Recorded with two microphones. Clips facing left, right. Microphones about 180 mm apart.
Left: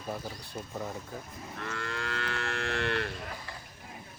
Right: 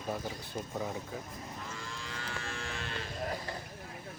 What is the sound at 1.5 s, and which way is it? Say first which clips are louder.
Livestock: left 11 dB; 70° left (ahead or behind).